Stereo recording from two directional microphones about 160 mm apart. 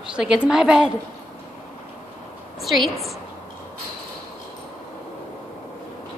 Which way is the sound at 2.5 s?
Centre (ahead or behind).